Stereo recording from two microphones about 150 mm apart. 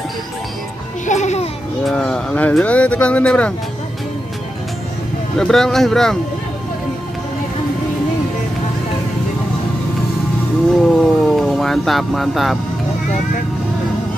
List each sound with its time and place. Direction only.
1.0 s a sound: 50° left (ahead or behind)
1.9 s speech: 5° left (ahead or behind)
5.4 s speech: 5° left (ahead or behind)
10.8 s speech: 5° left (ahead or behind)